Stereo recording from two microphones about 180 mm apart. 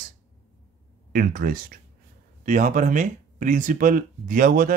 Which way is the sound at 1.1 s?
55° right (ahead or behind).